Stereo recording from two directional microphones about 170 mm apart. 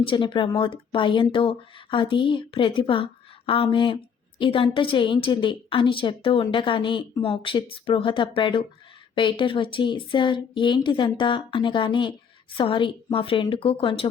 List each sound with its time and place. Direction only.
0.0 s a woman's voice: 30° left (ahead or behind)